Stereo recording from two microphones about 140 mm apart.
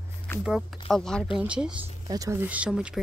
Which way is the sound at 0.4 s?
5° right (ahead or behind).